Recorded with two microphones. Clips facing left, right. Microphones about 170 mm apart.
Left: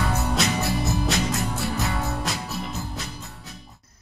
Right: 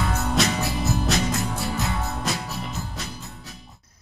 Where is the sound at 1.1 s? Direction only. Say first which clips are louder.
Right 2 dB; centre (ahead or behind).